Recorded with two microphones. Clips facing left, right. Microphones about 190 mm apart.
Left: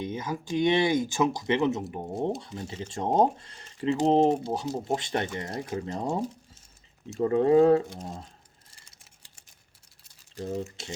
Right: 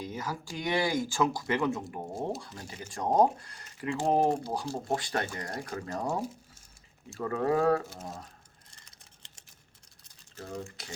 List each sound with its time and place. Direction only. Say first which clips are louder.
0.0 s speech: left 4 dB; 20° left (ahead or behind)
7.2 s speech: left 8 dB; 25° left (ahead or behind)
10.3 s speech: left 7 dB; 20° left (ahead or behind)